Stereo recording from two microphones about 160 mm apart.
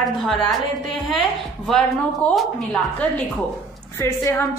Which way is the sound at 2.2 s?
5° left (ahead or behind).